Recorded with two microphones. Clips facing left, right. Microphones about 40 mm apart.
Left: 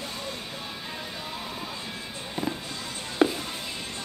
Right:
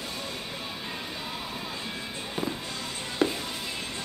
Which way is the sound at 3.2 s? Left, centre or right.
Left.